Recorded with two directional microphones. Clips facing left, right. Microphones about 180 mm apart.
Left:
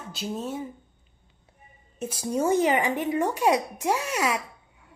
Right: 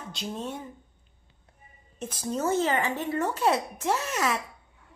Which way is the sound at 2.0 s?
10° left (ahead or behind).